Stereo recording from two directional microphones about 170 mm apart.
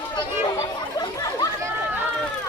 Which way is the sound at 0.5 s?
20° left (ahead or behind).